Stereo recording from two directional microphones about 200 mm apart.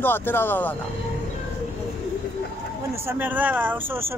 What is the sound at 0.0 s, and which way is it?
Speech, 10° left (ahead or behind).